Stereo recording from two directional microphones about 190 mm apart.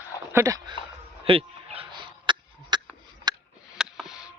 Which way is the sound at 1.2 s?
30° right (ahead or behind).